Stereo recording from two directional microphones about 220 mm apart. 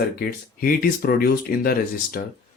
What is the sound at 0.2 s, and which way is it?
Speech, 40° left (ahead or behind).